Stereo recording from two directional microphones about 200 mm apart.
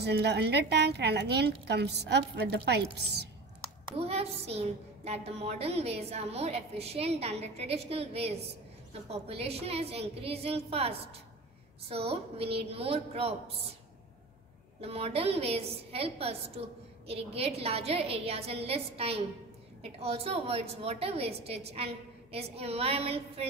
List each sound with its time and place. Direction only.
0.0 s a woman's voice: 55° right (ahead or behind)
4.0 s a woman's voice: 30° right (ahead or behind)
14.8 s a woman's voice: 30° right (ahead or behind)